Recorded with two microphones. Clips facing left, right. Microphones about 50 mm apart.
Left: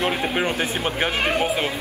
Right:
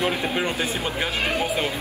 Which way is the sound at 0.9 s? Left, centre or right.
Left.